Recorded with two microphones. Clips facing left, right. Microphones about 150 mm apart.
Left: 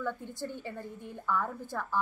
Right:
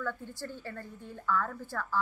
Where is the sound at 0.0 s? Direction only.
15° left (ahead or behind).